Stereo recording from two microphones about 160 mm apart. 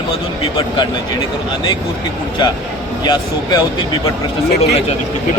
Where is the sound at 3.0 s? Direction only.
25° left (ahead or behind).